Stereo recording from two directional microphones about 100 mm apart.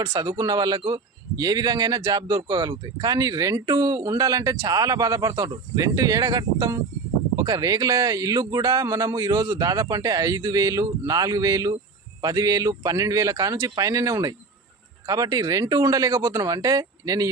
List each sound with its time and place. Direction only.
0.0 s speech: 45° right (ahead or behind)